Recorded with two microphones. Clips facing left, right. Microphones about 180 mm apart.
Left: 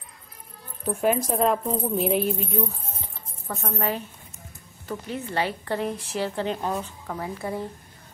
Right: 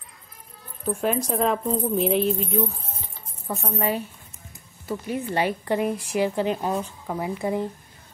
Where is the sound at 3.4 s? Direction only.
10° right (ahead or behind).